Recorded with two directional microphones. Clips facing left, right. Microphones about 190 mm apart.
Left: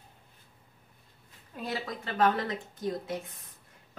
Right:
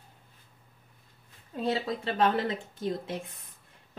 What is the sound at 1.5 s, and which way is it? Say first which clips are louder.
A woman's voice: right 6 dB; 25° right (ahead or behind).